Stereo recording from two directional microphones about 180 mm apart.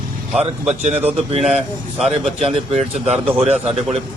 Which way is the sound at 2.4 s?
35° right (ahead or behind).